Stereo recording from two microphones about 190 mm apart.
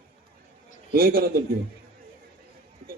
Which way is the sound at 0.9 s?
50° right (ahead or behind).